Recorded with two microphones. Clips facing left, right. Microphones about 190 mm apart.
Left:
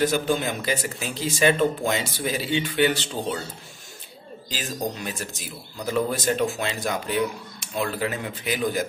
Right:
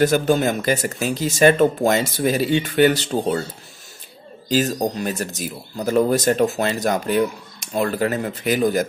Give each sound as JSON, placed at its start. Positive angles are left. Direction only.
{"t": 0.0, "sound": "speech", "side_deg": -45}
{"t": 4.5, "sound": "speech", "side_deg": -40}